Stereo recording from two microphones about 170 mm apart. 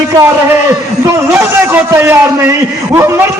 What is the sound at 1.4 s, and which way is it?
A man's voice, 15° right (ahead or behind).